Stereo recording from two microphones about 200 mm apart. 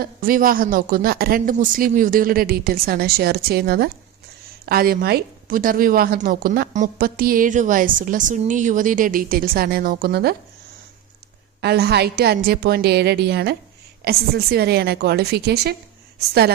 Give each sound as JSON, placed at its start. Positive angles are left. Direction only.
{"t": 0.0, "sound": "a woman's voice", "side_deg": -45}
{"t": 11.6, "sound": "a woman's voice", "side_deg": -55}